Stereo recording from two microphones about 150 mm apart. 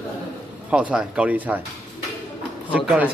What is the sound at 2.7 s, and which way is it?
Speech, 5° right (ahead or behind).